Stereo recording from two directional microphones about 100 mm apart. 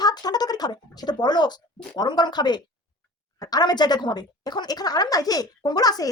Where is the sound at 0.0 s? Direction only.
40° left (ahead or behind).